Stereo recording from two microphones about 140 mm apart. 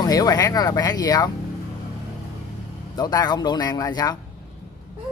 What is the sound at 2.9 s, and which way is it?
Speech, 30° left (ahead or behind).